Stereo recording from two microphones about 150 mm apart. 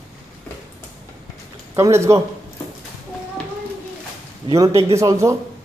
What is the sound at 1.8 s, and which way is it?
Speech, 20° right (ahead or behind).